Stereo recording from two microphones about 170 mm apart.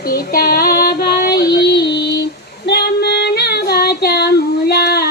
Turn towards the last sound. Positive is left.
turn(degrees=70)  # may be behind; listen again after turning